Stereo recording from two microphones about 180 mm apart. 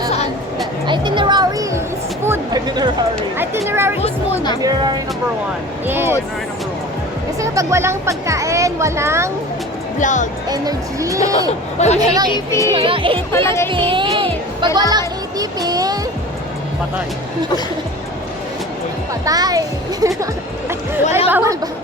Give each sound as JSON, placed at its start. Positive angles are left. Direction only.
{"t": 0.9, "sound": "a sound", "side_deg": -25}
{"t": 2.6, "sound": "speech", "side_deg": -25}
{"t": 3.3, "sound": "speech", "side_deg": -15}
{"t": 5.9, "sound": "speech", "side_deg": -15}
{"t": 7.4, "sound": "speech", "side_deg": -15}
{"t": 10.0, "sound": "speech", "side_deg": 45}
{"t": 10.5, "sound": "speech", "side_deg": -20}
{"t": 12.5, "sound": "speech", "side_deg": 15}
{"t": 12.7, "sound": "speech", "side_deg": -30}
{"t": 13.3, "sound": "speech", "side_deg": 15}
{"t": 13.7, "sound": "speech", "side_deg": -30}
{"t": 14.8, "sound": "music", "side_deg": -20}
{"t": 19.2, "sound": "a child's voice", "side_deg": -20}